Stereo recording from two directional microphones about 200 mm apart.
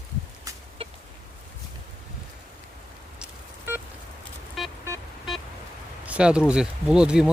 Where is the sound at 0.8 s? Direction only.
30° right (ahead or behind).